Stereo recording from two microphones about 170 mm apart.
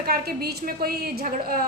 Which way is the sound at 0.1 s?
65° right (ahead or behind).